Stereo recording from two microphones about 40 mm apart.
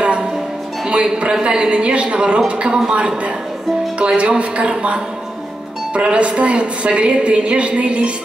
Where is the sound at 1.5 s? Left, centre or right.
Right.